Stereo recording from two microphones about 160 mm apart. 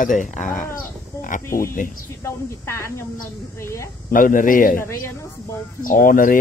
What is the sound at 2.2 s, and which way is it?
Speech, 15° left (ahead or behind).